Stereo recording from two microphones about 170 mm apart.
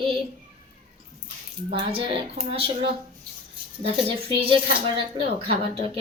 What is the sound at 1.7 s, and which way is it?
A woman's voice, 30° right (ahead or behind).